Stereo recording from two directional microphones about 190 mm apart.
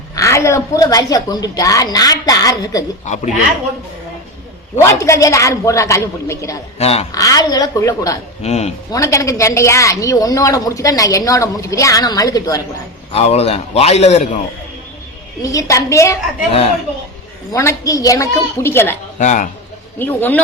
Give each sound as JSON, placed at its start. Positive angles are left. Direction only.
{"t": 0.2, "sound": "a woman's voice", "side_deg": 15}
{"t": 3.1, "sound": "a man's voice", "side_deg": 40}
{"t": 4.8, "sound": "a woman's voice", "side_deg": 15}
{"t": 6.7, "sound": "a man's voice", "side_deg": 35}
{"t": 7.1, "sound": "a woman's voice", "side_deg": 20}
{"t": 8.4, "sound": "a man's voice", "side_deg": 35}
{"t": 8.9, "sound": "a woman's voice", "side_deg": 15}
{"t": 13.1, "sound": "a man's voice", "side_deg": 35}
{"t": 15.4, "sound": "a woman's voice", "side_deg": 15}
{"t": 17.5, "sound": "a woman's voice", "side_deg": 15}
{"t": 19.2, "sound": "a man's voice", "side_deg": 40}
{"t": 20.0, "sound": "a woman's voice", "side_deg": 10}